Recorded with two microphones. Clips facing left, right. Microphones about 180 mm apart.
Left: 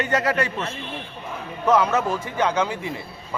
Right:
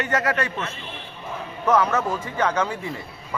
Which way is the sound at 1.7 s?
10° left (ahead or behind).